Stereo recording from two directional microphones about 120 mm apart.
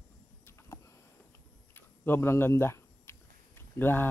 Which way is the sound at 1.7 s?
20° left (ahead or behind).